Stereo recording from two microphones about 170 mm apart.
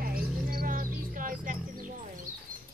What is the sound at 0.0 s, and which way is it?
Music, 60° right (ahead or behind).